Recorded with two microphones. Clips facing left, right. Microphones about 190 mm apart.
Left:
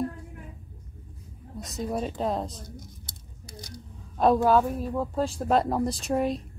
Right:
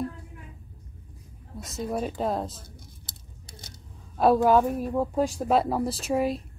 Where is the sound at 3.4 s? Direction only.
25° right (ahead or behind).